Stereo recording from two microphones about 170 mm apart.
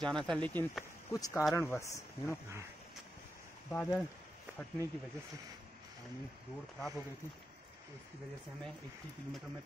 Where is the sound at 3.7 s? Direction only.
15° left (ahead or behind).